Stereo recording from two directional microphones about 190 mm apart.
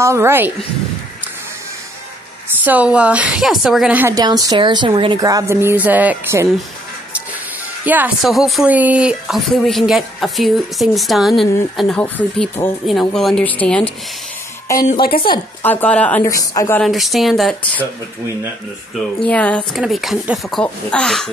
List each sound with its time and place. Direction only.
0.0 s a woman's voice: 15° right (ahead or behind)
2.6 s a woman's voice: 10° right (ahead or behind)
4.2 s speech: 20° right (ahead or behind)
7.8 s speech: 10° right (ahead or behind); by 13.8 s 5° left (ahead or behind)
15.6 s a woman's voice: 10° left (ahead or behind)
16.8 s speech: centre (ahead or behind)
18.9 s speech: 5° left (ahead or behind)